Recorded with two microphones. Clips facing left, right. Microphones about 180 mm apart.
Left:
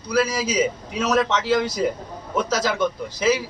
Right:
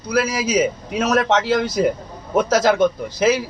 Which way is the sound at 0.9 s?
50° right (ahead or behind).